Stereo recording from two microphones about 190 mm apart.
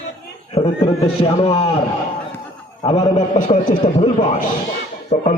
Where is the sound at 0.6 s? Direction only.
30° left (ahead or behind).